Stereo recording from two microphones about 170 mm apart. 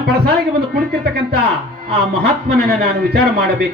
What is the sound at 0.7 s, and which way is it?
A man's voice, 65° right (ahead or behind).